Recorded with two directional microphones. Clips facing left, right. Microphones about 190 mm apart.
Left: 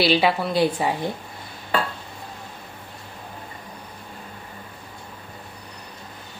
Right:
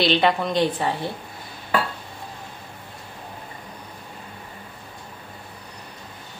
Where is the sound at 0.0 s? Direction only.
5° left (ahead or behind).